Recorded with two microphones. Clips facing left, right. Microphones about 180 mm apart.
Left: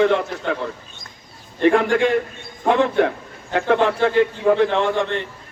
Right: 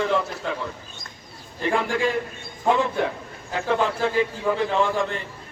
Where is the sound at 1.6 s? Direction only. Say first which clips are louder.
Left 7 dB; 70° left (ahead or behind).